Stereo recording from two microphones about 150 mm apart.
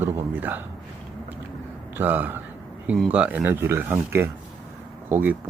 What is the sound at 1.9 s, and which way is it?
A man's voice, 15° right (ahead or behind).